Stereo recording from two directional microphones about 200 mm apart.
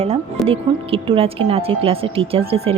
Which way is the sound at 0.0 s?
30° right (ahead or behind).